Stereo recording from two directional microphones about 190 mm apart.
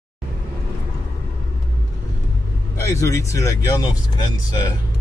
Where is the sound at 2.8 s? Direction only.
15° left (ahead or behind).